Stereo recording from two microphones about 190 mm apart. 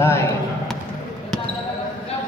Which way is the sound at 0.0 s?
15° left (ahead or behind).